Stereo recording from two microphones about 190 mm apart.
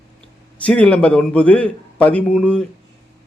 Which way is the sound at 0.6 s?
5° left (ahead or behind).